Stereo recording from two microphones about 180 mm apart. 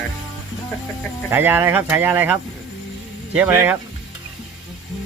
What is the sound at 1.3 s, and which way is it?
Speech, 10° right (ahead or behind).